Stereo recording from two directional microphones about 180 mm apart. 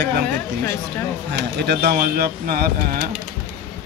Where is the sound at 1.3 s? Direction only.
65° right (ahead or behind).